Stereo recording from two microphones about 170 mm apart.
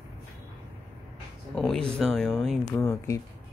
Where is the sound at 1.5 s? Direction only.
5° left (ahead or behind).